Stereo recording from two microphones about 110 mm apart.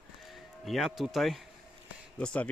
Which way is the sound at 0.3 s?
Centre (ahead or behind).